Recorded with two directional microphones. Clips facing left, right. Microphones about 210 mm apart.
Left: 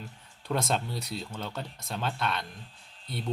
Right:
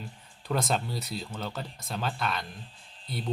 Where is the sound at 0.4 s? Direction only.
Centre (ahead or behind).